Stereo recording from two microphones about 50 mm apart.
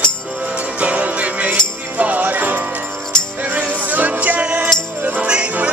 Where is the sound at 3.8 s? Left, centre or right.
Right.